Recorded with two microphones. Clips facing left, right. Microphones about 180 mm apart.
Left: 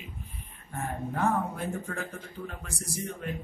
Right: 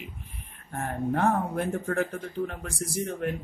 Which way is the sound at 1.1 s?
55° right (ahead or behind).